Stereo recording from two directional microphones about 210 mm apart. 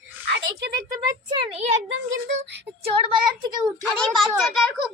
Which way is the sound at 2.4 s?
55° right (ahead or behind).